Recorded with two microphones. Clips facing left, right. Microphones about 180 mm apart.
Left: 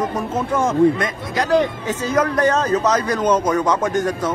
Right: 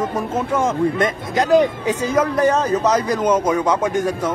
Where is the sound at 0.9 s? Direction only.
25° right (ahead or behind).